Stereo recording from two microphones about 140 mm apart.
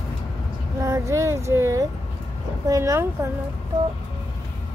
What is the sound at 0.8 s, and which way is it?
Female singing, 20° right (ahead or behind).